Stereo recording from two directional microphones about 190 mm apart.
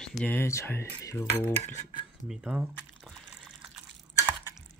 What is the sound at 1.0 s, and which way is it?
Cutlery, 15° left (ahead or behind).